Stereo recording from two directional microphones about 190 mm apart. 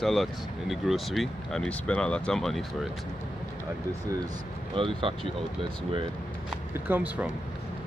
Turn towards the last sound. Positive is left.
turn(degrees=-10)  # may be behind; listen again after turning